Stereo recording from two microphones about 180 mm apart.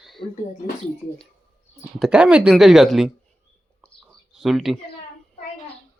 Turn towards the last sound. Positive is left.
turn(degrees=0)  # may be behind; listen again after turning